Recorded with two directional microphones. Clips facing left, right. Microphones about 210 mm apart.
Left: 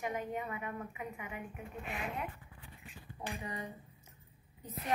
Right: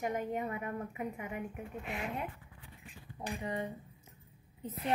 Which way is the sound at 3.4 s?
25° right (ahead or behind).